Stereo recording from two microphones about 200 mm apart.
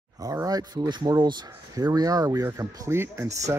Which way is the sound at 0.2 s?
15° right (ahead or behind).